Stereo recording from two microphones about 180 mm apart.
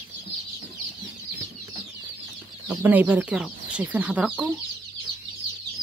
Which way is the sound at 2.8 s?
10° right (ahead or behind).